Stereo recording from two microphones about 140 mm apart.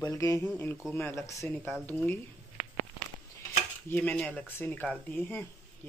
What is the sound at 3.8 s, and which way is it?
Speech, 10° left (ahead or behind).